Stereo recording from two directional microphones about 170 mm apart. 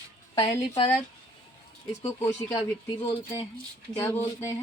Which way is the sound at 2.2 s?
20° left (ahead or behind).